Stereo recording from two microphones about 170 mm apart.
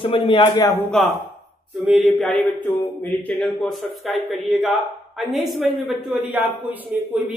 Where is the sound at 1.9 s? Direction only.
Centre (ahead or behind).